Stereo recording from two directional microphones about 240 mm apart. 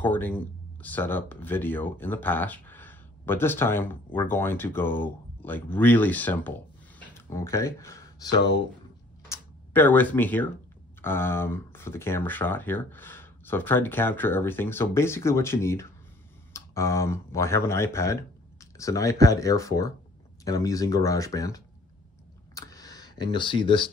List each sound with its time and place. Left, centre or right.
0.0 s speech: centre
7.0 s a sound: centre
9.3 s speech: centre
22.5 s camera: centre